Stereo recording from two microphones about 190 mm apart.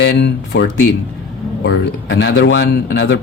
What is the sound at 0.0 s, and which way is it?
Speech, 70° left (ahead or behind).